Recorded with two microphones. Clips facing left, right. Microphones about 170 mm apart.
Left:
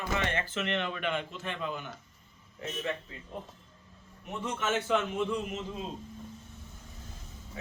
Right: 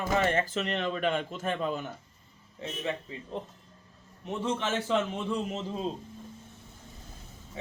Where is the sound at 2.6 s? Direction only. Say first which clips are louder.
Right 1 dB; 30° right (ahead or behind).